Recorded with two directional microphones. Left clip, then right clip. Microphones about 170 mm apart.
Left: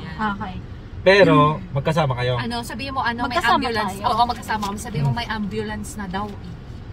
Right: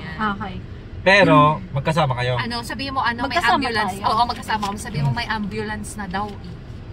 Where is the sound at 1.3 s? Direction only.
25° left (ahead or behind).